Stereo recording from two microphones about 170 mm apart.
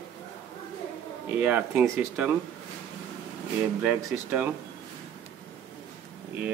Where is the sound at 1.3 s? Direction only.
10° right (ahead or behind).